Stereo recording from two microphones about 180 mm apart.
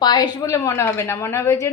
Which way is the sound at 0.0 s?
25° left (ahead or behind).